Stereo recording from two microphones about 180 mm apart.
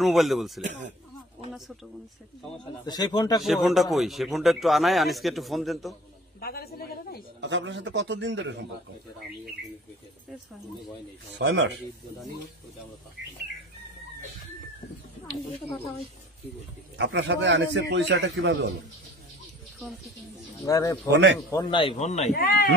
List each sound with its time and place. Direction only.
0.0 s a man's voice: centre (ahead or behind)
0.6 s speech: 45° right (ahead or behind)
2.8 s a man's voice: 25° left (ahead or behind)
3.4 s a man's voice: centre (ahead or behind)
6.4 s a woman's voice: 55° left (ahead or behind)
7.3 s a man's voice: 85° right
11.3 s speech: 90° right
16.9 s a man's voice: 80° right
20.6 s speech: 15° left (ahead or behind)
21.5 s a man's voice: 25° left (ahead or behind)
22.3 s a woman's voice: 55° left (ahead or behind)